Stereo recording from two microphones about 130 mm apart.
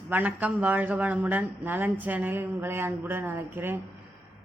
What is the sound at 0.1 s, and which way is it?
A woman's voice, 15° right (ahead or behind).